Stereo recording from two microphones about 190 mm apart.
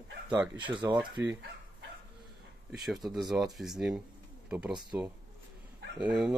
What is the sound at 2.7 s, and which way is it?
Speech, centre (ahead or behind).